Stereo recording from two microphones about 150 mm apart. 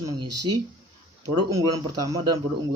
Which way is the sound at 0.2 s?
25° right (ahead or behind).